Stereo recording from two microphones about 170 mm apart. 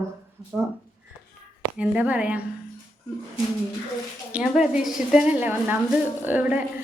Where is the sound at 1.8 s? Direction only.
10° right (ahead or behind).